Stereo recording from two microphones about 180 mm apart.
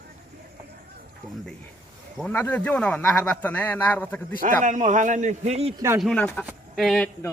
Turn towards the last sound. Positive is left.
turn(degrees=0)  # may be behind; listen again after turning